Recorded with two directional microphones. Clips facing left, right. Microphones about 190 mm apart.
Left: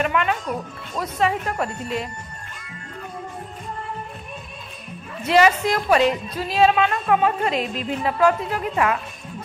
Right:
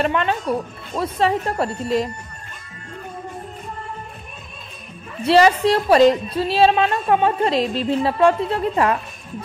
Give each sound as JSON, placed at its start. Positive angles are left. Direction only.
{"t": 0.0, "sound": "a woman's voice", "side_deg": -30}
{"t": 5.2, "sound": "a woman's voice", "side_deg": -35}